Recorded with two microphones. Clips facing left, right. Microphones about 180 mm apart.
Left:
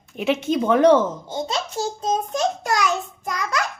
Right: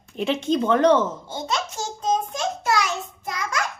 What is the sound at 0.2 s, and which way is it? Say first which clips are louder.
Speech: left 1 dB; 5° left (ahead or behind).